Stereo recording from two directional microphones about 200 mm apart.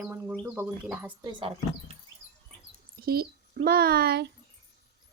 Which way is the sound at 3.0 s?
50° right (ahead or behind).